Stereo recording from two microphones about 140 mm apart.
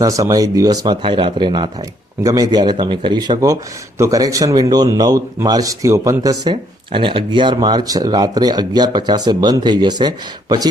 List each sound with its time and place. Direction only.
0.0 s a man's voice: 25° right (ahead or behind)